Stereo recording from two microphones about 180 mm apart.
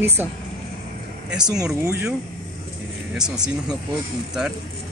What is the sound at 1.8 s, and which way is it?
Speech, 15° right (ahead or behind).